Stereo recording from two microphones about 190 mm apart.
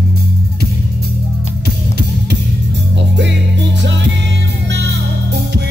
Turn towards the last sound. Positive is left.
turn(degrees=-65)  # may be behind; listen again after turning